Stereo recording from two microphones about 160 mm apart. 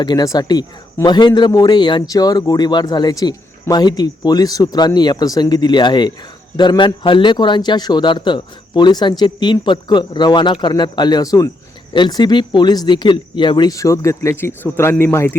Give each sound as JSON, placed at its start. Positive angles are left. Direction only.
{"t": 0.0, "sound": "a man's voice", "side_deg": 25}